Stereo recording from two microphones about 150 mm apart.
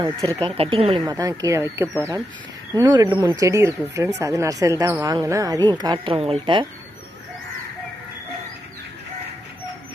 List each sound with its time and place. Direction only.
0.3 s speech: 20° right (ahead or behind)
0.5 s speech: 40° right (ahead or behind)
1.0 s speech: 25° right (ahead or behind)